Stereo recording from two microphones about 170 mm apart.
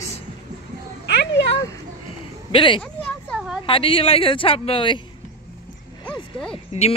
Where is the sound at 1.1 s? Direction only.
90° left.